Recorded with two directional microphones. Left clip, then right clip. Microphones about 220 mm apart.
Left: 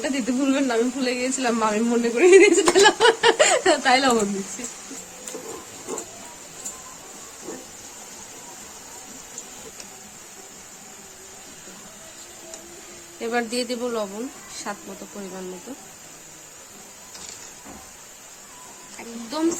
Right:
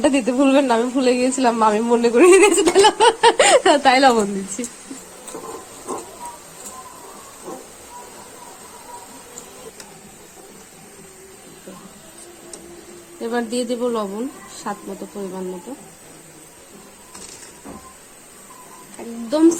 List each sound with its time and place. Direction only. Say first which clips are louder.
0.0 s speech: right 8 dB; 20° right (ahead or behind)
13.2 s speech: right 2 dB; 10° left (ahead or behind)
19.3 s speech: right 9 dB; centre (ahead or behind)